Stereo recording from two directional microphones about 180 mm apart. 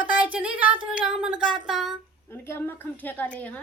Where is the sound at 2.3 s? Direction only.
10° left (ahead or behind).